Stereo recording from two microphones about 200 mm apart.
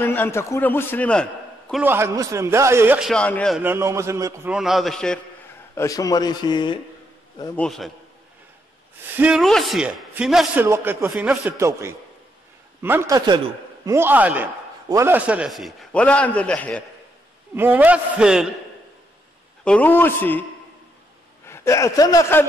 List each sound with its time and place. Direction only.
0.0 s a man's voice: 10° left (ahead or behind)
1.7 s a man's voice: 10° right (ahead or behind)
3.1 s a man's voice: 5° left (ahead or behind)
3.5 s a man's voice: 10° right (ahead or behind)
5.8 s a man's voice: 15° left (ahead or behind)
7.6 s a man's voice: centre (ahead or behind)
9.1 s a man's voice: 5° right (ahead or behind)
11.1 s a man's voice: centre (ahead or behind)
11.5 s a man's voice: 15° right (ahead or behind); by 16.8 s 5° left (ahead or behind)
17.6 s a man's voice: 10° right (ahead or behind)
19.6 s a man's voice: 5° left (ahead or behind)
21.5 s speech: 15° left (ahead or behind)